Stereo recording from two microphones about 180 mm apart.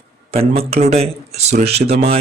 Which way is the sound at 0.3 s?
35° right (ahead or behind).